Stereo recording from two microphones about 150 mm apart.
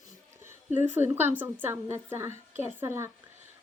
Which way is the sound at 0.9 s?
15° right (ahead or behind).